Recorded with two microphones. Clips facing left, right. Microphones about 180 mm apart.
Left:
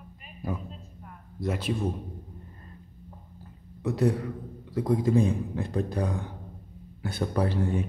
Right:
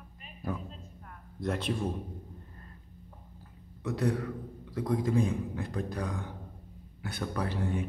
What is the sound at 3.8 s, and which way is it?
A man's voice, 25° left (ahead or behind).